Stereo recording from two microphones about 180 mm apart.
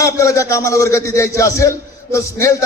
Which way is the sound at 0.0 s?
15° left (ahead or behind).